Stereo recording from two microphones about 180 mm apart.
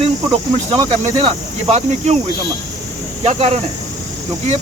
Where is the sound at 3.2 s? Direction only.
40° right (ahead or behind).